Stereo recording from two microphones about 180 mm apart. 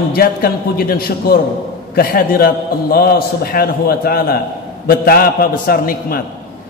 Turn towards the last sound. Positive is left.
turn(degrees=55)  # may be behind; listen again after turning